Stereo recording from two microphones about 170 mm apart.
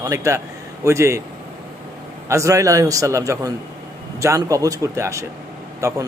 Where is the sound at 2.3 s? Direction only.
20° right (ahead or behind).